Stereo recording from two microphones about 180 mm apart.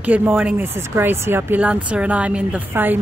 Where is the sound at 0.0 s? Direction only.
10° right (ahead or behind).